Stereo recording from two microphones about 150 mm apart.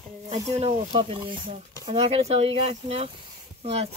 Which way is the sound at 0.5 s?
45° right (ahead or behind).